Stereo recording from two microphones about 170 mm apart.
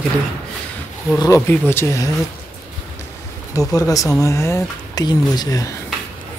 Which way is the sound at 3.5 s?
20° left (ahead or behind).